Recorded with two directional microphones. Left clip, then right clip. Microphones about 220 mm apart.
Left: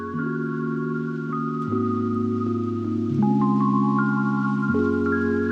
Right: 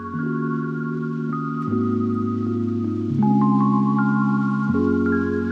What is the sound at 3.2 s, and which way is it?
Music, 20° left (ahead or behind).